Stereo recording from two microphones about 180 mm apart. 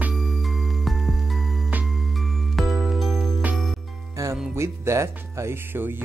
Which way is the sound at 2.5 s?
Centre (ahead or behind).